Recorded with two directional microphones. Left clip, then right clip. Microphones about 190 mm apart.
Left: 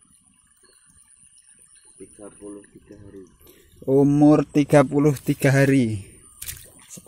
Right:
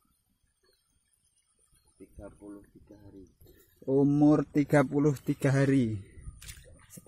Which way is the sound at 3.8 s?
5° right (ahead or behind).